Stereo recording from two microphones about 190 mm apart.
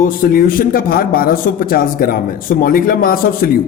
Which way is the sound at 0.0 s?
50° left (ahead or behind).